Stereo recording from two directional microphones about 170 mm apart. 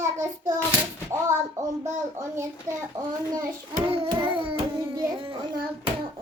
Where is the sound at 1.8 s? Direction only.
20° right (ahead or behind).